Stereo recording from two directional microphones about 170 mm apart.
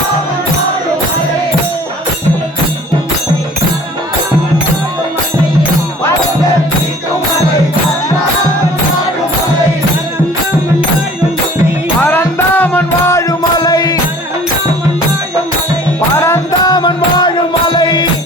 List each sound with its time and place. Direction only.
12.0 s music: 10° left (ahead or behind)
16.1 s music: 15° left (ahead or behind)